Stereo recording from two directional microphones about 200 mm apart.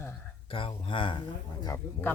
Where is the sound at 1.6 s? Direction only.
15° left (ahead or behind).